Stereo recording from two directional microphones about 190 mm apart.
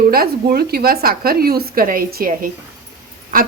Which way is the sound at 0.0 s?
50° right (ahead or behind).